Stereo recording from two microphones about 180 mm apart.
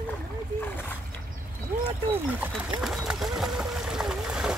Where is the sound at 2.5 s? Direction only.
Centre (ahead or behind).